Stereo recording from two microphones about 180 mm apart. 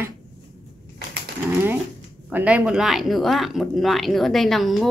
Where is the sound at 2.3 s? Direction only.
10° right (ahead or behind).